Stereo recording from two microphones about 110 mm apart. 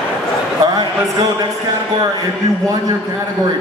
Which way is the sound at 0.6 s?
35° right (ahead or behind).